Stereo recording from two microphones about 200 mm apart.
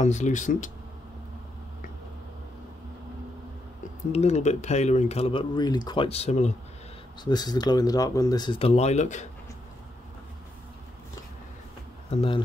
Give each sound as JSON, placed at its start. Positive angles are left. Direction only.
{"t": 0.0, "sound": "speech", "side_deg": 35}
{"t": 4.1, "sound": "speech", "side_deg": 35}
{"t": 7.2, "sound": "speech", "side_deg": 20}
{"t": 12.1, "sound": "speech", "side_deg": 25}